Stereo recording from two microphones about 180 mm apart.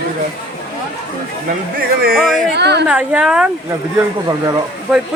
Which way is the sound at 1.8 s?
55° right (ahead or behind).